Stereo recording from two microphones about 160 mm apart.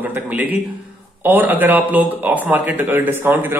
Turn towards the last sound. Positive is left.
turn(degrees=-10)  # may be behind; listen again after turning